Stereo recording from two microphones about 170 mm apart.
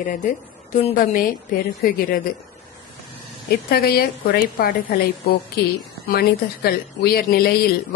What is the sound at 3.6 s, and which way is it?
A woman's voice, 65° left (ahead or behind).